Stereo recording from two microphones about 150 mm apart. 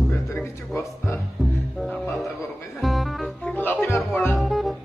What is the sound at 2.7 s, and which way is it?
Music, centre (ahead or behind).